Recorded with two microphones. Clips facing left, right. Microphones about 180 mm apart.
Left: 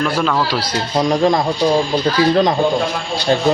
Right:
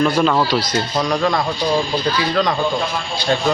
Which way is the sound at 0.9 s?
20° left (ahead or behind).